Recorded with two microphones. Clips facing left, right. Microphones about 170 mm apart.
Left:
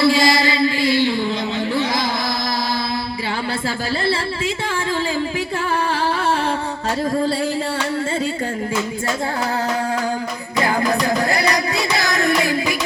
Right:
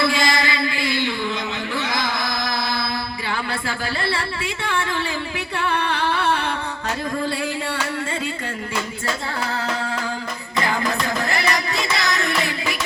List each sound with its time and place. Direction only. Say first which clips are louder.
0.0 s music: left 5 dB; 35° left (ahead or behind)
5.7 s music: left 2 dB; 40° left (ahead or behind)
10.7 s music: left 5 dB; 45° left (ahead or behind)